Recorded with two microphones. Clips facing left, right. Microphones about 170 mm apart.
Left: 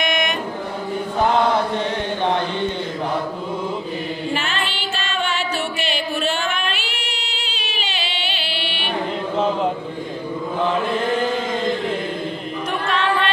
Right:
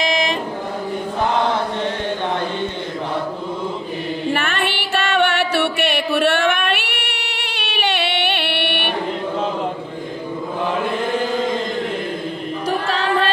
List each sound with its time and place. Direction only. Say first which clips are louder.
0.0 s chant: right 2 dB; 30° right (ahead or behind)
4.3 s music: right 6 dB; 60° right (ahead or behind)
12.8 s music: left 1 dB; 35° right (ahead or behind)